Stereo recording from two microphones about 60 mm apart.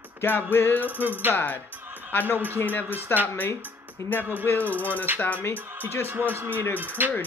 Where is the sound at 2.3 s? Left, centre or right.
Right.